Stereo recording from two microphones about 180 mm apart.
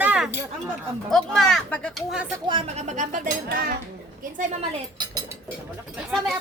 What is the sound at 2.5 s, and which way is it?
Speech, 30° right (ahead or behind).